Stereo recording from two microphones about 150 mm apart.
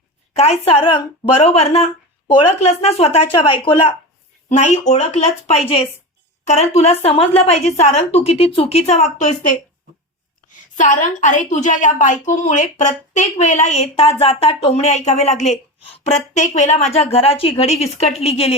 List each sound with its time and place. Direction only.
0.3 s a woman's voice: 45° left (ahead or behind)
4.4 s a woman's voice: 50° left (ahead or behind)
10.8 s a woman's voice: 60° left (ahead or behind); by 18.5 s 40° left (ahead or behind)